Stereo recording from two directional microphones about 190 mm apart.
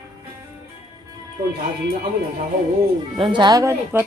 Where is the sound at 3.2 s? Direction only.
25° right (ahead or behind).